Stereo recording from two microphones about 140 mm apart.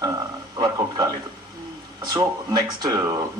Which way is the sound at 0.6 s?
30° right (ahead or behind).